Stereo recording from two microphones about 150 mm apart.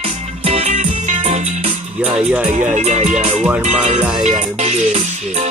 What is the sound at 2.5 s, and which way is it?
Speech, 50° right (ahead or behind).